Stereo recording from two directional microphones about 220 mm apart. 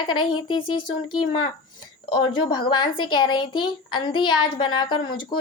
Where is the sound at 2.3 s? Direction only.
20° left (ahead or behind).